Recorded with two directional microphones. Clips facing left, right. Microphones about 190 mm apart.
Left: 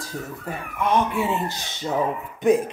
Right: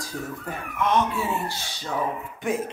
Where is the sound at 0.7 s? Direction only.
15° left (ahead or behind).